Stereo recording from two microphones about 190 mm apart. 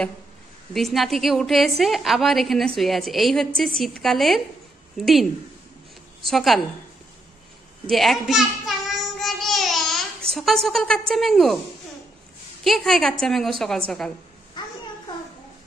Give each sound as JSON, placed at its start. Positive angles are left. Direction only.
{"t": 0.7, "sound": "a woman's voice", "side_deg": 0}
{"t": 6.2, "sound": "a woman's voice", "side_deg": 0}
{"t": 7.9, "sound": "child singing", "side_deg": 0}
{"t": 12.6, "sound": "a woman's voice", "side_deg": 0}
{"t": 14.6, "sound": "a sound", "side_deg": 25}